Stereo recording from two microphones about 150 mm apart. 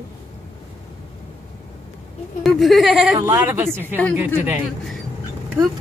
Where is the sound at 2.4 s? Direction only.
Centre (ahead or behind).